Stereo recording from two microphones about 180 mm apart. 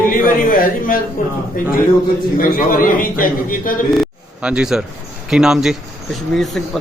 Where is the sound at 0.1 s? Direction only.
50° left (ahead or behind).